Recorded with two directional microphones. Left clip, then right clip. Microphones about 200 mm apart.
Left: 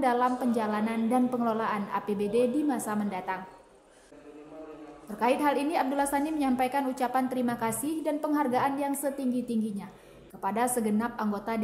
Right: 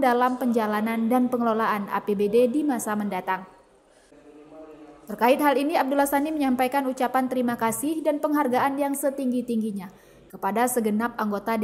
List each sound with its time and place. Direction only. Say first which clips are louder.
0.0 s a woman's voice: right 4 dB; 20° right (ahead or behind)
5.0 s a woman's voice: right 6 dB; 20° right (ahead or behind)